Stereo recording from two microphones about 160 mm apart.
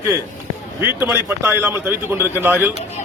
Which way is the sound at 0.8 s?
10° right (ahead or behind).